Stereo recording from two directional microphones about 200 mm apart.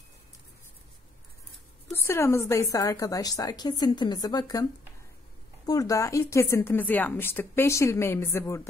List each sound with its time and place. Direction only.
2.0 s speech: 15° left (ahead or behind)
5.7 s speech: 15° left (ahead or behind)